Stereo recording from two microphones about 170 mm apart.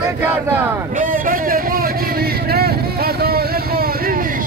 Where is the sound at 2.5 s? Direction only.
65° right (ahead or behind).